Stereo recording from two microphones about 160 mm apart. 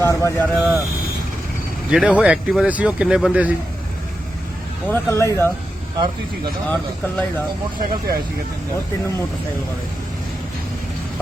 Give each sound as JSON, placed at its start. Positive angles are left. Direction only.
{"t": 0.0, "sound": "speech", "side_deg": 20}
{"t": 0.4, "sound": "speech", "side_deg": 0}
{"t": 1.9, "sound": "speech", "side_deg": -5}
{"t": 4.9, "sound": "speech", "side_deg": 15}
{"t": 6.7, "sound": "speech", "side_deg": 10}
{"t": 7.8, "sound": "speech", "side_deg": -70}